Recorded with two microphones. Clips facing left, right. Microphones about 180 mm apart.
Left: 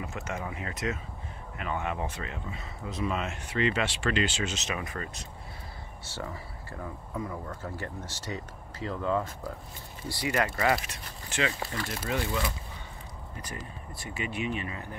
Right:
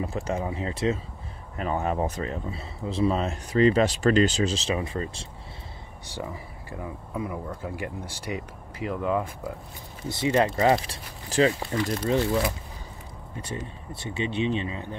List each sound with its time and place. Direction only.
0.0 s speech: 30° right (ahead or behind)
6.0 s speech: 15° right (ahead or behind)
10.0 s speech: 25° right (ahead or behind)